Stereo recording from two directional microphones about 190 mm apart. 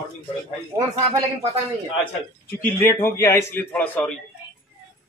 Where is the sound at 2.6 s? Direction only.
10° left (ahead or behind).